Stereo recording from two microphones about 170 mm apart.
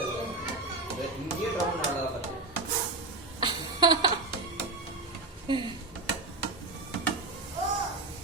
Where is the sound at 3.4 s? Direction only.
25° right (ahead or behind).